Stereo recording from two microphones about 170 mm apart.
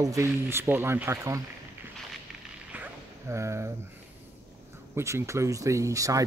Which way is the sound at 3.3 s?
15° right (ahead or behind).